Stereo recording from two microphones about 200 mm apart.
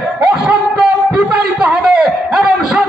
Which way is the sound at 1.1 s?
5° right (ahead or behind).